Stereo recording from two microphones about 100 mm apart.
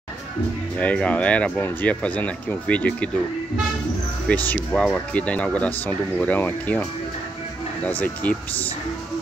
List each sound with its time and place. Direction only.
0.7 s speech: 10° left (ahead or behind)
4.3 s speech: 10° left (ahead or behind)